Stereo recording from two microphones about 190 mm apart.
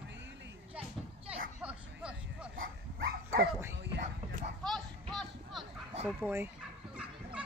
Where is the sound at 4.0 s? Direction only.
45° right (ahead or behind).